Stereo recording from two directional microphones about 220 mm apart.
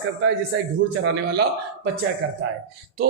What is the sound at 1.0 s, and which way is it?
Speech, 50° right (ahead or behind).